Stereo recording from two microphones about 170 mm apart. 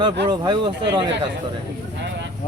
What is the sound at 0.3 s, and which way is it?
Speech, 25° right (ahead or behind).